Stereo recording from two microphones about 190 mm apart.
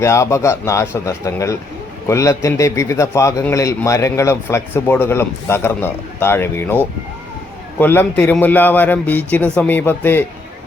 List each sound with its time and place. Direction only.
0.0 s a man's voice: 15° left (ahead or behind)